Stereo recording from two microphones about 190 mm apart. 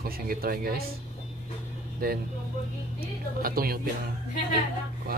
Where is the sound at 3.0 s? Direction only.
50° right (ahead or behind).